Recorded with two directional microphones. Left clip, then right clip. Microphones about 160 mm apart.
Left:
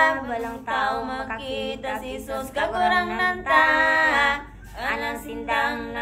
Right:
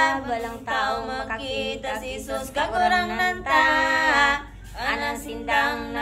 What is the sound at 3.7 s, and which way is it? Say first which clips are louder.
Music: left 1 dB; 10° right (ahead or behind).